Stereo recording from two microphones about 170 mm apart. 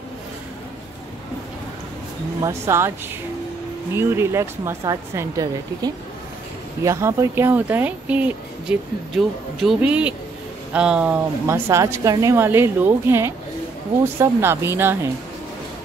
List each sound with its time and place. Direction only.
2.4 s speech: 15° right (ahead or behind)
3.9 s speech: 15° right (ahead or behind)